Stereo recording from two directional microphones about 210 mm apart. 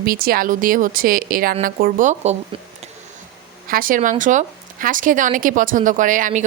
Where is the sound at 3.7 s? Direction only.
40° right (ahead or behind).